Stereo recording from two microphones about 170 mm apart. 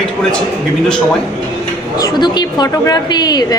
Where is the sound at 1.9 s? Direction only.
25° left (ahead or behind).